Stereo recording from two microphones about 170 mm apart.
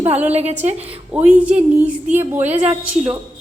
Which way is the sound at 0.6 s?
45° right (ahead or behind).